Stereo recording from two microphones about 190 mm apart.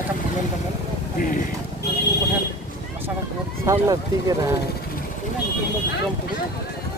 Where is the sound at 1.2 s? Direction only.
45° left (ahead or behind).